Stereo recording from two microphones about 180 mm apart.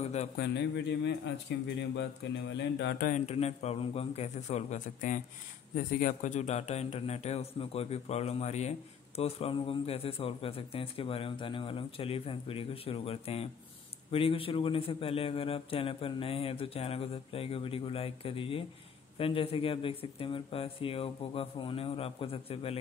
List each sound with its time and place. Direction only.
0.0 s a man's voice: 40° left (ahead or behind)
0.4 s a man's voice: 70° left (ahead or behind)
2.5 s a man's voice: 75° left (ahead or behind)
3.0 s a man's voice: 45° left (ahead or behind)